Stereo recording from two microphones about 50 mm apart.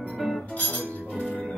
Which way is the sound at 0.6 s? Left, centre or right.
Left.